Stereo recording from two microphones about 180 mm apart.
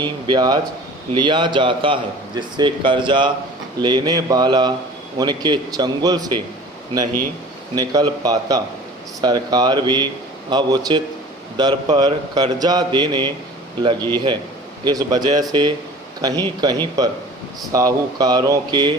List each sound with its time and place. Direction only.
0.0 s a man's voice: 25° right (ahead or behind)
7.8 s a man's voice: 20° right (ahead or behind)
14.8 s a man's voice: 20° right (ahead or behind)